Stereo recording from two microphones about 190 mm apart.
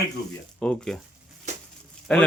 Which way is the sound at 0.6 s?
5° left (ahead or behind).